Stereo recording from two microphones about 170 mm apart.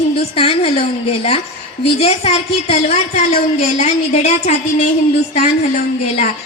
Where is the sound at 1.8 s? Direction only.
35° left (ahead or behind).